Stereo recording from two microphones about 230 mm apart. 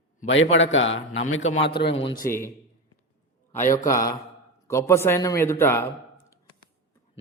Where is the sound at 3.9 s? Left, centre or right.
Centre.